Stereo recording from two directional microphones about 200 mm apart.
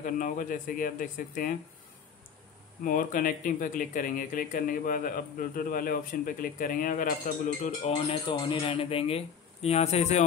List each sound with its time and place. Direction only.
0.0 s speech: 40° left (ahead or behind)
2.8 s speech: 45° left (ahead or behind)
7.8 s speech: 25° left (ahead or behind)